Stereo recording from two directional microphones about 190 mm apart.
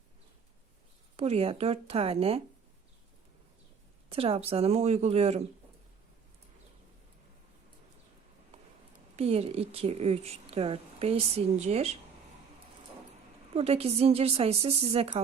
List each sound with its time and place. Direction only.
1.1 s speech: 35° right (ahead or behind)
4.1 s speech: 30° right (ahead or behind)
9.1 s speech: 30° right (ahead or behind)
13.5 s speech: 30° right (ahead or behind)